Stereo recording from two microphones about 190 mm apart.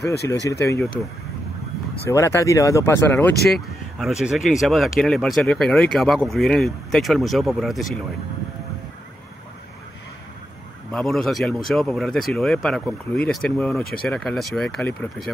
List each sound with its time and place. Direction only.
0.0 s speech: 60° left (ahead or behind)
0.5 s speech: 15° left (ahead or behind)
2.0 s speech: 15° left (ahead or behind)
4.0 s speech: centre (ahead or behind)
10.9 s speech: 5° left (ahead or behind)